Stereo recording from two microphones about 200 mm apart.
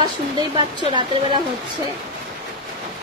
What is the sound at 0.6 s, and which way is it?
Speech, 25° right (ahead or behind).